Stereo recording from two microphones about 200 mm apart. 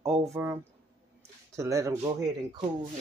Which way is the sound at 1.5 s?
15° right (ahead or behind).